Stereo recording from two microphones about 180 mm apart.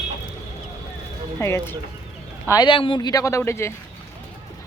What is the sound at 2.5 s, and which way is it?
Speech, 25° left (ahead or behind).